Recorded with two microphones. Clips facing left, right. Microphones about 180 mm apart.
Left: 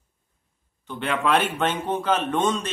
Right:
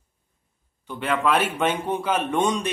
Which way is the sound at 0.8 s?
5° right (ahead or behind).